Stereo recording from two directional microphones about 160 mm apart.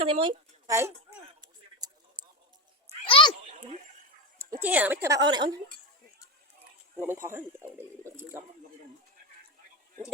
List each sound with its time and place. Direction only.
0.0 s a woman's voice: 35° right (ahead or behind)
0.7 s a sound: 15° right (ahead or behind)
3.1 s a sound: 30° left (ahead or behind)
4.4 s speech: 15° right (ahead or behind)
5.0 s a woman's voice: 25° right (ahead or behind)
7.0 s speech: 15° right (ahead or behind)